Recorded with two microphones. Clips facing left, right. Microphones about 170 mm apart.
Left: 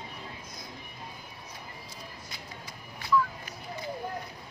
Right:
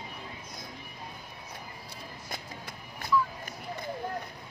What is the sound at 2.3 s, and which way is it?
Music, 50° right (ahead or behind).